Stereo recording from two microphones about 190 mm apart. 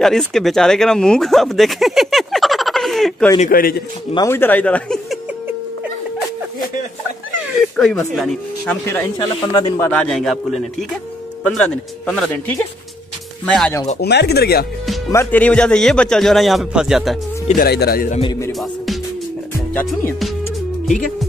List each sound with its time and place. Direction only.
0.0 s speech: centre (ahead or behind)
3.3 s speech: 50° left (ahead or behind)
4.1 s speech: 15° left (ahead or behind)
7.5 s speech: centre (ahead or behind)
8.8 s speech: 15° left (ahead or behind)
9.8 s speech: 5° left (ahead or behind)
14.0 s speech: 60° left (ahead or behind)
15.0 s speech: 10° left (ahead or behind)
17.6 s speech: 55° left (ahead or behind)
19.7 s speech: 10° left (ahead or behind)